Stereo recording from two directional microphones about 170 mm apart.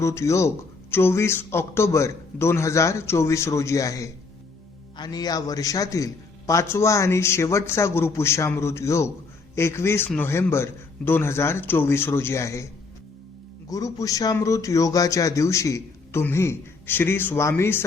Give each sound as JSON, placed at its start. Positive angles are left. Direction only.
{"t": 0.0, "sound": "speech", "side_deg": 15}
{"t": 13.7, "sound": "speech", "side_deg": 20}